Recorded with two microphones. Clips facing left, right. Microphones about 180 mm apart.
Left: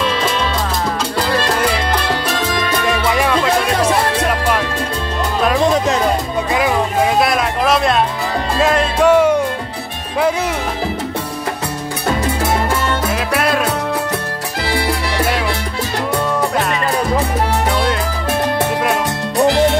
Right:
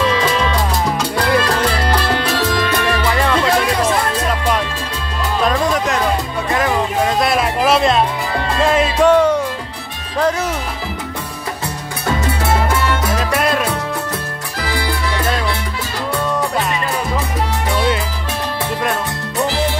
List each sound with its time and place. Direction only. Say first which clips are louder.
2.5 s music: even; 15° left (ahead or behind)
6.5 s music: even; 10° left (ahead or behind)
7.2 s speech: right 1 dB; 5° right (ahead or behind)
13.1 s music: even; 5° left (ahead or behind)
14.6 s music: left 3 dB; 30° left (ahead or behind)
19.4 s music: left 7 dB; 75° left (ahead or behind)